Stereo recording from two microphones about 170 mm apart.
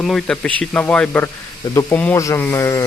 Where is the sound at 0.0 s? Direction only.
Centre (ahead or behind).